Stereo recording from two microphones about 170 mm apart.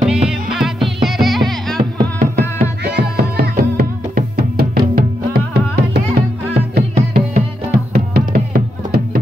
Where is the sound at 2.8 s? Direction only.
75° right (ahead or behind).